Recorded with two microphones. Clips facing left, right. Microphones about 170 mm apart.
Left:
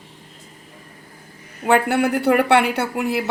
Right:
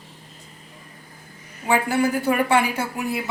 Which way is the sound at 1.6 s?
65° left (ahead or behind).